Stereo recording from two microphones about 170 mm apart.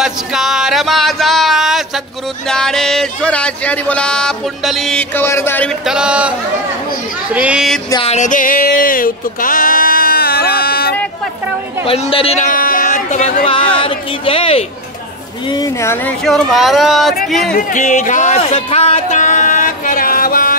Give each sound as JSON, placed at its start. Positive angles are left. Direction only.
{"t": 0.0, "sound": "speech", "side_deg": -5}
{"t": 5.9, "sound": "speech", "side_deg": -5}
{"t": 7.3, "sound": "speech", "side_deg": -5}
{"t": 7.9, "sound": "speech", "side_deg": 35}
{"t": 11.8, "sound": "a woman's voice", "side_deg": 35}
{"t": 12.4, "sound": "a sound", "side_deg": 55}
{"t": 13.7, "sound": "a woman's voice", "side_deg": 30}
{"t": 15.5, "sound": "speech", "side_deg": 20}
{"t": 16.3, "sound": "speech", "side_deg": 0}
{"t": 17.6, "sound": "speech", "side_deg": 50}